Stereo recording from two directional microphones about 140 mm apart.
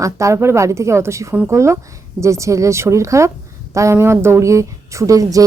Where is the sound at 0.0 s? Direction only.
20° right (ahead or behind).